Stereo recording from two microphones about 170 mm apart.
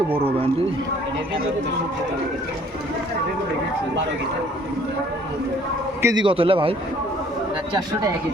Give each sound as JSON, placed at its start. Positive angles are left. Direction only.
{"t": 6.0, "sound": "a man's voice", "side_deg": -15}
{"t": 6.2, "sound": "a man's voice", "side_deg": -30}